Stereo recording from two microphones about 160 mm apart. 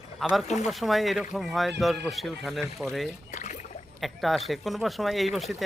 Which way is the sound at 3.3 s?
50° left (ahead or behind).